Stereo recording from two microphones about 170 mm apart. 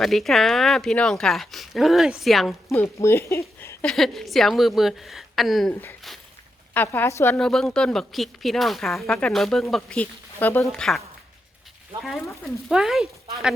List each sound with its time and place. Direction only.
0.0 s speech: centre (ahead or behind)
2.6 s speech: 15° left (ahead or behind)
3.9 s speech: centre (ahead or behind)
6.7 s speech: 10° left (ahead or behind)
7.3 s speech: centre (ahead or behind)